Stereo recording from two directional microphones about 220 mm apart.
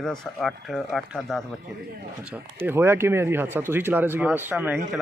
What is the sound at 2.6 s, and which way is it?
A man's voice, 10° right (ahead or behind).